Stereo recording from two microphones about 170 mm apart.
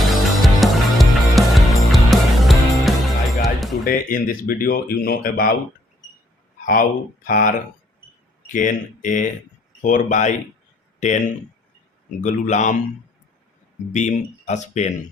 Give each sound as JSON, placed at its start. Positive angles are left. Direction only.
{"t": 0.1, "sound": "music", "side_deg": 0}
{"t": 3.8, "sound": "speech", "side_deg": 55}
{"t": 6.7, "sound": "speech", "side_deg": 50}
{"t": 8.5, "sound": "speech", "side_deg": 50}
{"t": 13.9, "sound": "speech", "side_deg": 45}